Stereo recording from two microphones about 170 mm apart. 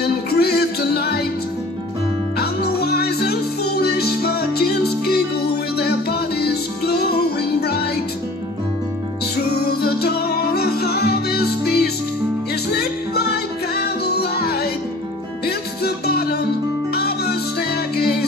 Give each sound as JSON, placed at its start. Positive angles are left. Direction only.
{"t": 0.0, "sound": "music", "side_deg": 70}
{"t": 2.3, "sound": "music", "side_deg": 70}
{"t": 9.5, "sound": "music", "side_deg": 70}